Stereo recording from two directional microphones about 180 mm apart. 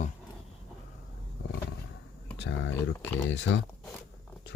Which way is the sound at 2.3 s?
80° left.